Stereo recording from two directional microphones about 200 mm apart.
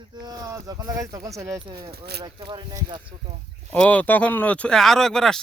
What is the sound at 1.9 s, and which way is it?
Speech, 55° right (ahead or behind).